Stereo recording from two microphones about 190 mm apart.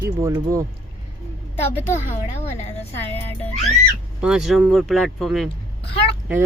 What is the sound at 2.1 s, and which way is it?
Speech, 35° left (ahead or behind).